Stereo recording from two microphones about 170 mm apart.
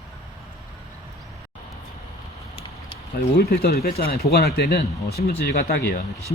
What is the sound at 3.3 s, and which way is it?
Speech, 70° left (ahead or behind).